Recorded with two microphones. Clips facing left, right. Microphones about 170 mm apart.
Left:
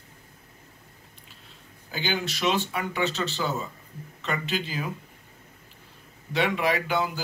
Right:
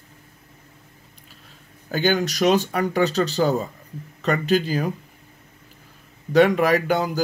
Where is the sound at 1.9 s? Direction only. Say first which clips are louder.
Right 9 dB; 45° right (ahead or behind).